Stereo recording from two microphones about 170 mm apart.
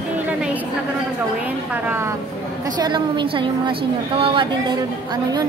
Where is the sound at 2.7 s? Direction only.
25° right (ahead or behind).